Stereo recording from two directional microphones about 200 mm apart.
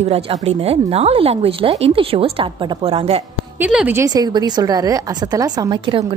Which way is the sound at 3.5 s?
5° right (ahead or behind).